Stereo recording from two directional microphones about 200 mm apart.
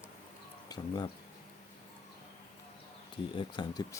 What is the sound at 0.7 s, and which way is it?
Speech, 20° left (ahead or behind).